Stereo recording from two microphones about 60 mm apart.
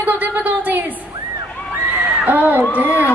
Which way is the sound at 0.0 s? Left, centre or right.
Right.